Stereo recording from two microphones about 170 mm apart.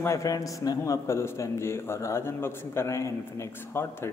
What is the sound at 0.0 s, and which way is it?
A man's voice, 20° left (ahead or behind).